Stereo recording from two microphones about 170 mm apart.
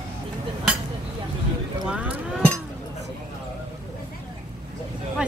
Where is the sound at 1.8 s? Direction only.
5° right (ahead or behind).